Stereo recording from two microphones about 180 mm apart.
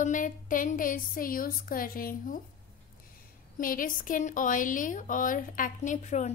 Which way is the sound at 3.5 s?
50° left (ahead or behind).